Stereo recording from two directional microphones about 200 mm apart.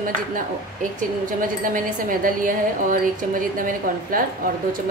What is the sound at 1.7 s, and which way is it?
A woman's voice, 40° right (ahead or behind).